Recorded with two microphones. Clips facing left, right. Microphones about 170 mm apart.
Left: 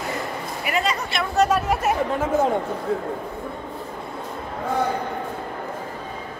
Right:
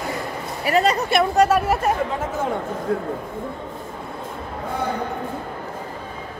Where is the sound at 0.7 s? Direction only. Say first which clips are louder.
Right 6 dB; 35° right (ahead or behind).